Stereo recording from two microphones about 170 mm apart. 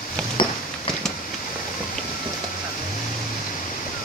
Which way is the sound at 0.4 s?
25° left (ahead or behind).